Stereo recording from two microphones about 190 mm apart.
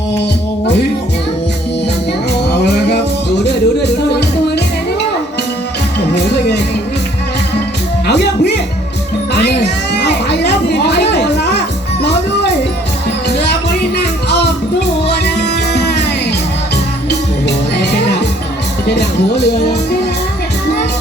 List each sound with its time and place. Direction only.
2.3 s music: 60° left (ahead or behind)
6.1 s music: 60° left (ahead or behind)
8.0 s music: 60° left (ahead or behind)
13.2 s music: 60° left (ahead or behind)
17.7 s music: 60° left (ahead or behind)